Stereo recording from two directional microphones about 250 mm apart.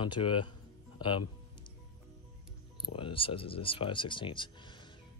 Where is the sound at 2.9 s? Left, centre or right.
Left.